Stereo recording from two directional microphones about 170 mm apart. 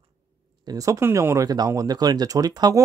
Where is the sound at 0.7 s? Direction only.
20° right (ahead or behind).